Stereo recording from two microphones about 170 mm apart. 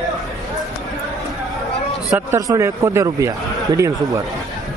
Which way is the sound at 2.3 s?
20° right (ahead or behind).